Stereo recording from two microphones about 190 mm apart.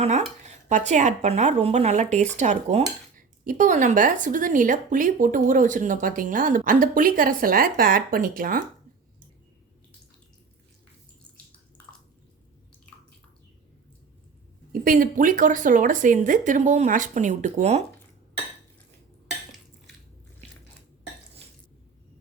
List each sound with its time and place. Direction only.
0.0 s speech: 35° right (ahead or behind)
14.7 s speech: 45° right (ahead or behind)